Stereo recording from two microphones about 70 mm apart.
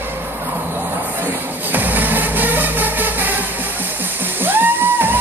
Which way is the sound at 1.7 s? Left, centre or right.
Right.